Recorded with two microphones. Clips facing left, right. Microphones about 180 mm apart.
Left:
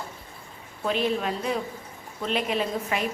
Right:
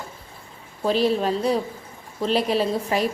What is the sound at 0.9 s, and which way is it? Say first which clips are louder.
Speech: right 5 dB; 35° right (ahead or behind).